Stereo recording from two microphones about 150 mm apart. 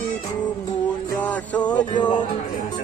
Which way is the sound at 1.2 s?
10° left (ahead or behind).